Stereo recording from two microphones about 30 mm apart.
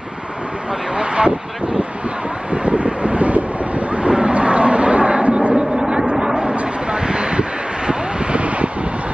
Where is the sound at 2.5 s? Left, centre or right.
Right.